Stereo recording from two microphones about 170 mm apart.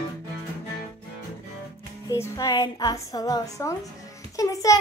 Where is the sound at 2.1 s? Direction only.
20° left (ahead or behind).